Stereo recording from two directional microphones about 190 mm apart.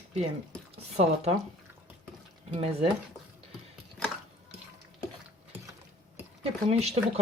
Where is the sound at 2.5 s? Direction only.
30° right (ahead or behind).